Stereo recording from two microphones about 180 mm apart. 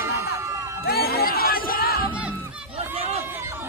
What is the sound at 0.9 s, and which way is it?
Crowd, 60° left (ahead or behind).